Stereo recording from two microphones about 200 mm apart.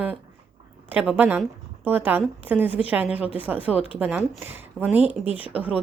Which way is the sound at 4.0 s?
5° right (ahead or behind).